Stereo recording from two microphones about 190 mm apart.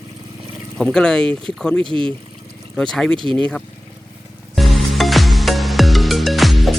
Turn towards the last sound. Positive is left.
turn(degrees=0)  # may be behind; listen again after turning